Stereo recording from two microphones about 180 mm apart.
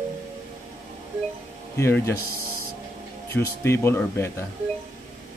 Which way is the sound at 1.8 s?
15° left (ahead or behind).